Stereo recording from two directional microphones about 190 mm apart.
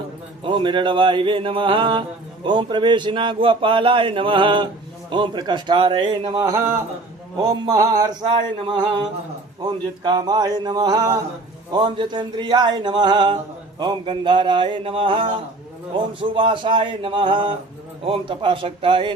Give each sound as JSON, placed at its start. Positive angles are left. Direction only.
{"t": 0.4, "sound": "mantra", "side_deg": -25}
{"t": 16.3, "sound": "mantra", "side_deg": -25}